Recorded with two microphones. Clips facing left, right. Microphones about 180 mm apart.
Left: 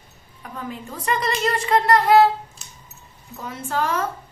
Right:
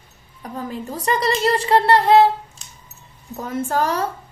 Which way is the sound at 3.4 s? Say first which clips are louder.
Right 4 dB; 45° right (ahead or behind).